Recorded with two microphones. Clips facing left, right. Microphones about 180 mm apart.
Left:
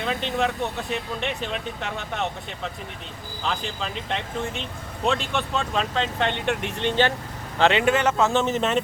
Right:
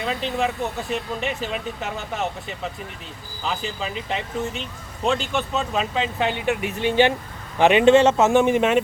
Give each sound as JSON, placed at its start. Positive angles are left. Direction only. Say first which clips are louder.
{"t": 0.0, "sound": "speech", "louder": "right 1 dB", "side_deg": 0}